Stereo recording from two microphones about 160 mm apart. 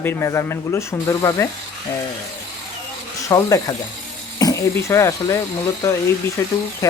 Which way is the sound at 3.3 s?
20° left (ahead or behind).